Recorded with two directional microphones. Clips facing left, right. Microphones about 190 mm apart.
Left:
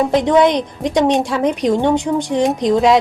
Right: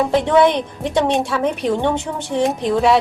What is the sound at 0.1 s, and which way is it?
Speech, 15° left (ahead or behind).